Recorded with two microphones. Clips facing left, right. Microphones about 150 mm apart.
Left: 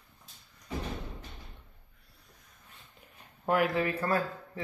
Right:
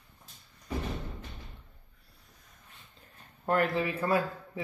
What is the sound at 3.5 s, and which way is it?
Speech, 5° left (ahead or behind).